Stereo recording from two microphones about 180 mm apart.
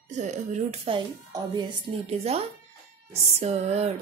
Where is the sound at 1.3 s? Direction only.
25° right (ahead or behind).